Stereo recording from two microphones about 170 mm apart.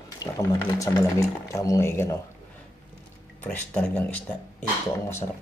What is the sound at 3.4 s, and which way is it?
Speech, 10° left (ahead or behind).